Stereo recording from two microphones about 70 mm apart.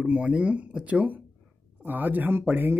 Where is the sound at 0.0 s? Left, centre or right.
Right.